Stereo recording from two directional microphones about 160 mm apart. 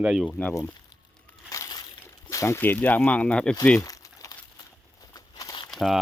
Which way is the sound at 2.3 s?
20° left (ahead or behind).